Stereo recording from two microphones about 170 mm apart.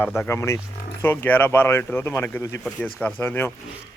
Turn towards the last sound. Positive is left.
turn(degrees=15)  # may be behind; listen again after turning